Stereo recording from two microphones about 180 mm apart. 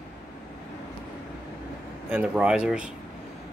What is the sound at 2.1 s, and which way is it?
Speech, 5° right (ahead or behind).